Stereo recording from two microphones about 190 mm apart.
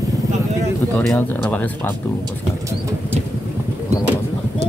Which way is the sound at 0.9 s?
10° left (ahead or behind).